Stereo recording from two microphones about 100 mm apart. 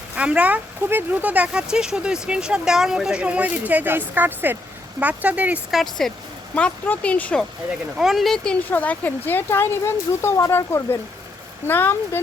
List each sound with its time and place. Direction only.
0.2 s speech: 10° right (ahead or behind)
5.7 s speech: centre (ahead or behind)
6.5 s speech: 15° left (ahead or behind)
7.9 s speech: 5° right (ahead or behind)
8.7 s speech: 15° left (ahead or behind)